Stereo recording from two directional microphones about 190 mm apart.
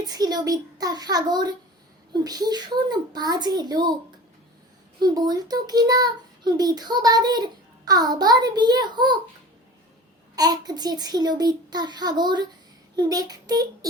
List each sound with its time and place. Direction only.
0.0 s a child's voice: 20° right (ahead or behind)
4.9 s a child's voice: 20° right (ahead or behind)
10.3 s a child's voice: 20° right (ahead or behind)